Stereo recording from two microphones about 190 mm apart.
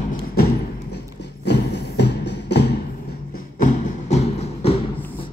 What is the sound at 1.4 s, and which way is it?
Music, 65° left (ahead or behind).